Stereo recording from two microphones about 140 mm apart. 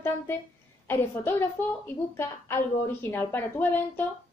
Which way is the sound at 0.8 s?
15° left (ahead or behind).